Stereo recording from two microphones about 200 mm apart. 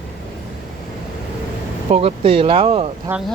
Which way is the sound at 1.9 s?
30° right (ahead or behind).